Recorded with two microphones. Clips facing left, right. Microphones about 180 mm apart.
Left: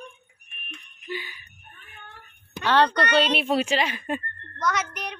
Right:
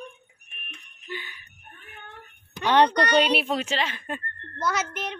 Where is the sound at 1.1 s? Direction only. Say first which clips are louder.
Left 3 dB; 10° left (ahead or behind).